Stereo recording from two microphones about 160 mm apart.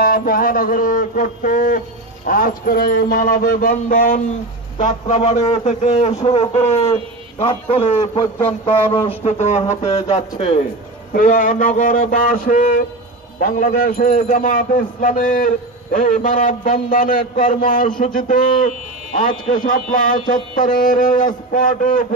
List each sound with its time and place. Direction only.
0.0 s a man's voice: 65° left (ahead or behind)
4.7 s a man's voice: 50° left (ahead or behind)
11.1 s a man's voice: 55° left (ahead or behind)